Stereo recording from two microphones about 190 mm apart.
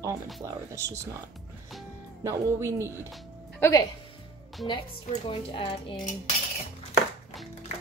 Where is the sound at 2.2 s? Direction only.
15° right (ahead or behind).